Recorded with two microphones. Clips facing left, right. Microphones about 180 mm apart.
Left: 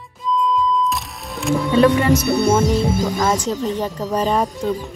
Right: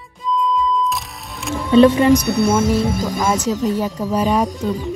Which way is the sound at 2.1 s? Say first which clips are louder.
Right 1 dB; 5° left (ahead or behind).